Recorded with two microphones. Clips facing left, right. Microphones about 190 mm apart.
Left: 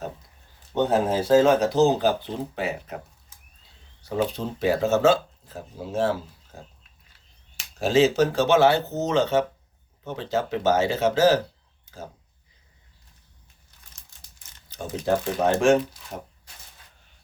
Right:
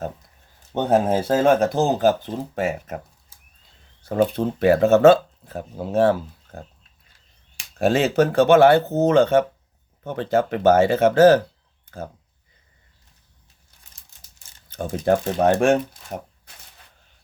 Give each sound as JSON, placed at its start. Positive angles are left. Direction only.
{"t": 0.7, "sound": "speech", "side_deg": -55}
{"t": 4.0, "sound": "speech", "side_deg": -50}
{"t": 7.8, "sound": "speech", "side_deg": -55}
{"t": 14.7, "sound": "speech", "side_deg": -55}